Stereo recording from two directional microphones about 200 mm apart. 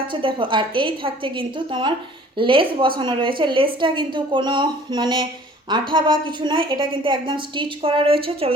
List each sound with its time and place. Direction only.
0.1 s a woman's voice: 25° right (ahead or behind)